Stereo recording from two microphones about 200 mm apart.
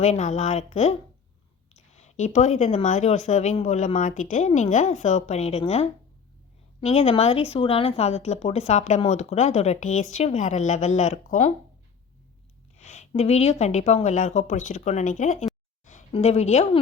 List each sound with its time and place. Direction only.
0.0 s speech: 35° left (ahead or behind)
12.7 s a woman's voice: 35° left (ahead or behind)